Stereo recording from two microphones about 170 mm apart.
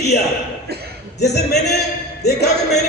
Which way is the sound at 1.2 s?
75° left (ahead or behind).